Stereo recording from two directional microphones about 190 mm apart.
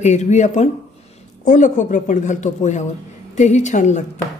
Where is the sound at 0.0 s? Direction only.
35° left (ahead or behind).